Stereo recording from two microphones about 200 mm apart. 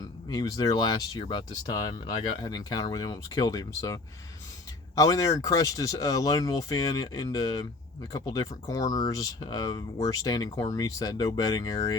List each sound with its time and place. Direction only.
0.0 s speech: 20° left (ahead or behind)